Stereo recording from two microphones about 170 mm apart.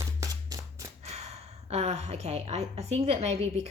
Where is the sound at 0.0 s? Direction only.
20° right (ahead or behind).